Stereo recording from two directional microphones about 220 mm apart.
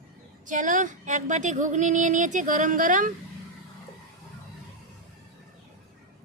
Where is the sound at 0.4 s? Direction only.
35° right (ahead or behind).